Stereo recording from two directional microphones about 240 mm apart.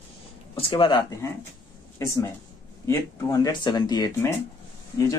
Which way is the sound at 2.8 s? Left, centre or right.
Centre.